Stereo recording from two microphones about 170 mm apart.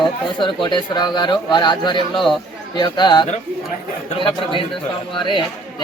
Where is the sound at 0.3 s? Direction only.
25° left (ahead or behind).